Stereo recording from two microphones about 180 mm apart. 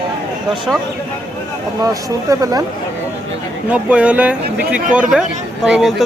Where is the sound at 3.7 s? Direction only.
5° right (ahead or behind).